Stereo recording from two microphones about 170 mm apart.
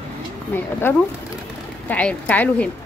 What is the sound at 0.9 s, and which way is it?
A woman's voice, 15° left (ahead or behind).